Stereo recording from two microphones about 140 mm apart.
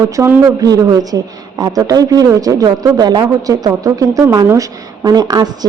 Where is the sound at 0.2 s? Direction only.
20° right (ahead or behind).